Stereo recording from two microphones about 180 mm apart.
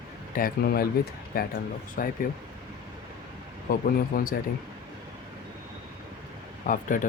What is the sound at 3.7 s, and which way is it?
Speech, 55° left (ahead or behind).